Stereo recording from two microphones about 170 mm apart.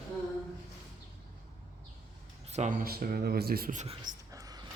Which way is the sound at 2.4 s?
40° right (ahead or behind).